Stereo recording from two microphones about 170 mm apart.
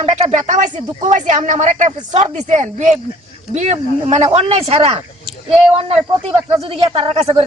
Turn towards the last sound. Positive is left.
turn(degrees=-35)  # may be behind; listen again after turning